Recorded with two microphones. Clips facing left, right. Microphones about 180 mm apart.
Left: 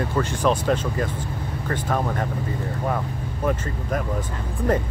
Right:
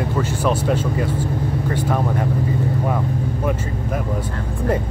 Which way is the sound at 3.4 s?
10° right (ahead or behind).